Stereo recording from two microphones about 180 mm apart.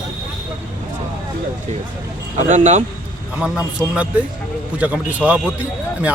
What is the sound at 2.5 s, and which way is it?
Speech, 45° right (ahead or behind).